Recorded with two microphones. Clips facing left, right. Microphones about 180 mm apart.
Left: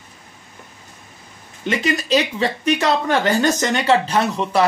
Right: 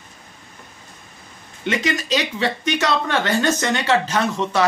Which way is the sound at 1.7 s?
35° left (ahead or behind).